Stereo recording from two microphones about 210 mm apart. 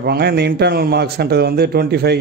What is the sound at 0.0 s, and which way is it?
A man's voice, 50° right (ahead or behind).